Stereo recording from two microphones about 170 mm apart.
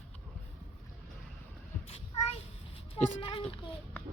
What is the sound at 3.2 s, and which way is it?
Children playing, 30° left (ahead or behind).